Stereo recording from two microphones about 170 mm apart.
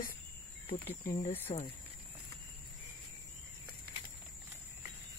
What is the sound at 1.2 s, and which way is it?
Speech, 40° left (ahead or behind).